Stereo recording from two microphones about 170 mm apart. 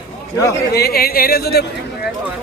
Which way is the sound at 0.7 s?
65° left (ahead or behind).